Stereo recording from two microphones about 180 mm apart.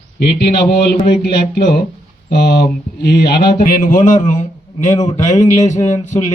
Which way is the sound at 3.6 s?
50° left (ahead or behind).